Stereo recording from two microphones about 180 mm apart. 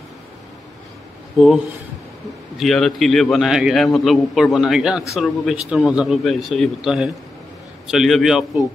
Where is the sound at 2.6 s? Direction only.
Centre (ahead or behind).